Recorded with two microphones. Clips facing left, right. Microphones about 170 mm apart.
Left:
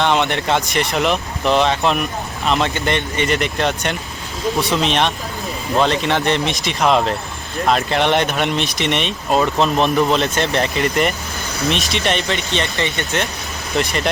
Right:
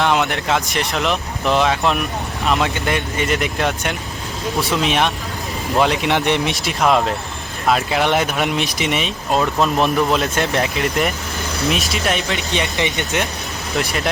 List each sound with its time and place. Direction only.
0.0 s speech: centre (ahead or behind)
6.5 s speech: centre (ahead or behind)
12.5 s speech: 15° right (ahead or behind)
13.7 s speech: centre (ahead or behind)